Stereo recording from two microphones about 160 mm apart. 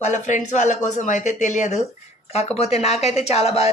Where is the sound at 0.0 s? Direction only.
50° left (ahead or behind).